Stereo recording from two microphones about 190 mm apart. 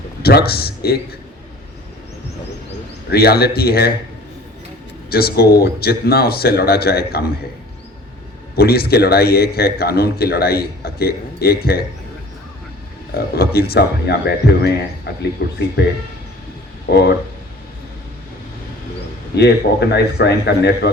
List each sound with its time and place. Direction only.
0.2 s a man's voice: 55° left (ahead or behind)
3.1 s a man's voice: 55° left (ahead or behind)
5.0 s a man's voice: 55° left (ahead or behind)
8.5 s a man's voice: 55° left (ahead or behind)
13.1 s a man's voice: 55° left (ahead or behind)
19.4 s a man's voice: 60° left (ahead or behind)